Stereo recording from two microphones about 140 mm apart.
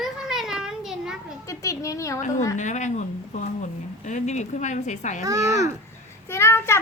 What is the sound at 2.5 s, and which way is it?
Speech, 60° left (ahead or behind).